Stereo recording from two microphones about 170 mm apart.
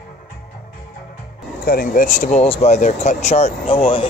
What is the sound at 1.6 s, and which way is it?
Speech, 60° left (ahead or behind).